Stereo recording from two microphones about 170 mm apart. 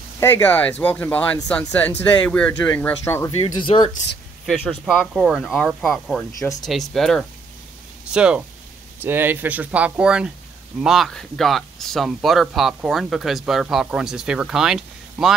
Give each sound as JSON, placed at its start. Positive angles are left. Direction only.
{"t": 0.2, "sound": "speech", "side_deg": 10}
{"t": 3.4, "sound": "speech", "side_deg": 30}
{"t": 4.5, "sound": "speech", "side_deg": 0}